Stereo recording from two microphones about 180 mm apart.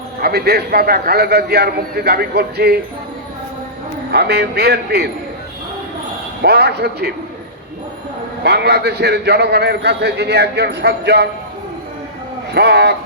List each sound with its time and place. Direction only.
0.2 s a man's voice: 60° right (ahead or behind)
4.1 s a man's voice: 65° right (ahead or behind)
6.4 s a man's voice: 65° right (ahead or behind)
8.4 s a man's voice: 65° right (ahead or behind)
12.5 s a man's voice: 65° right (ahead or behind)